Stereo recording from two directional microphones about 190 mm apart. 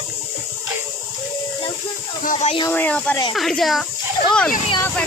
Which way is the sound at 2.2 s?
40° left (ahead or behind).